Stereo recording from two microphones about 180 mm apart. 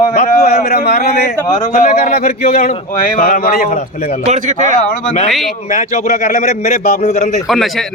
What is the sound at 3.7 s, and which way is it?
Speech, 40° left (ahead or behind).